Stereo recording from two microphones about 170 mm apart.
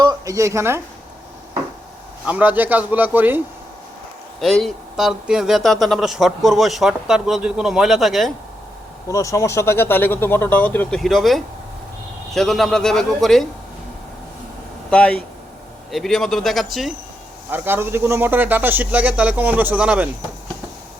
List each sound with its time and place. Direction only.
0.0 s speech: 20° right (ahead or behind)
2.2 s speech: 10° right (ahead or behind)
4.6 s speech: centre (ahead or behind)
9.0 s speech: 20° left (ahead or behind)
11.0 s speech: centre (ahead or behind)
14.8 s speech: 5° left (ahead or behind)
17.5 s speech: 15° right (ahead or behind)